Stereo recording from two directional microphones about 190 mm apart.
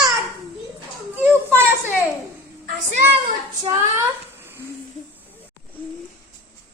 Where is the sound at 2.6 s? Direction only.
40° right (ahead or behind).